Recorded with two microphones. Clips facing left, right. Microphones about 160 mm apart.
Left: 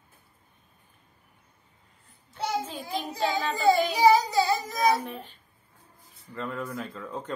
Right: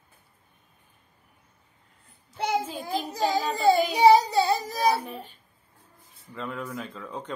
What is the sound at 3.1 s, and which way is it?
Child singing, 40° right (ahead or behind).